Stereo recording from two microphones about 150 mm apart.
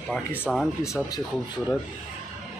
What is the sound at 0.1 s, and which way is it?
Speech, 10° left (ahead or behind).